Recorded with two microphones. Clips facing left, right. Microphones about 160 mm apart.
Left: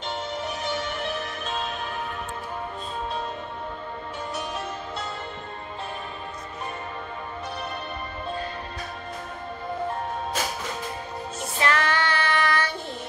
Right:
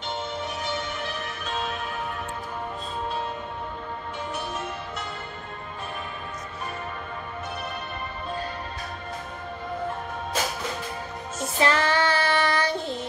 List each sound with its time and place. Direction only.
11.5 s child singing: 30° right (ahead or behind)